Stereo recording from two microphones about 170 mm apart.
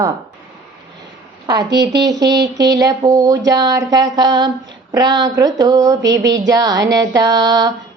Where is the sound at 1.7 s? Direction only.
80° right.